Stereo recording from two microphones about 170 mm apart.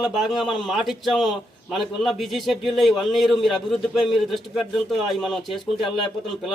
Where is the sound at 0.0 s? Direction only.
Centre (ahead or behind).